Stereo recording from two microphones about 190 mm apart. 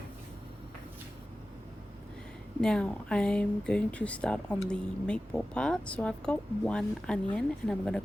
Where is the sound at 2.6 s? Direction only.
5° left (ahead or behind).